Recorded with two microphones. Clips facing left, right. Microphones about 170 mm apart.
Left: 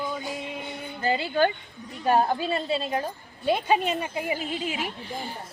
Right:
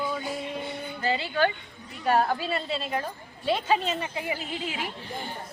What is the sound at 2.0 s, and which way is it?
A woman's voice, 20° left (ahead or behind).